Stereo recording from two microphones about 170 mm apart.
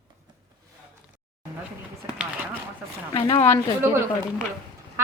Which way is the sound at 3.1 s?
25° left (ahead or behind).